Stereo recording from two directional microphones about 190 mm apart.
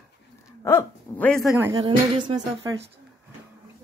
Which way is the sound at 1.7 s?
20° right (ahead or behind).